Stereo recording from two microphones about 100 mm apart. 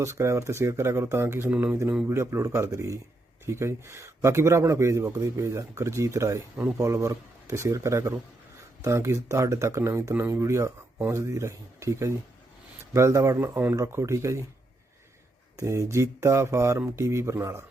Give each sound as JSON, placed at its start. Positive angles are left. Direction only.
{"t": 0.0, "sound": "speech", "side_deg": -30}
{"t": 15.5, "sound": "speech", "side_deg": -30}